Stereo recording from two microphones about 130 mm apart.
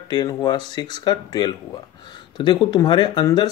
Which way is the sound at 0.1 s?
30° left (ahead or behind).